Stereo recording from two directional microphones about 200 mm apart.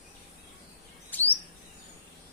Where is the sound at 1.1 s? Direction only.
10° left (ahead or behind).